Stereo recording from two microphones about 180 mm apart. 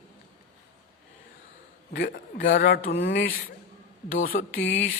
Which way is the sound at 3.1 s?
90° left.